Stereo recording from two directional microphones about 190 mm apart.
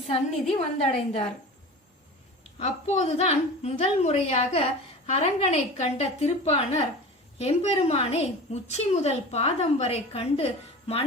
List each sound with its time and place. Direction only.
0.5 s a woman's voice: 35° left (ahead or behind)
2.6 s a woman's voice: 35° left (ahead or behind)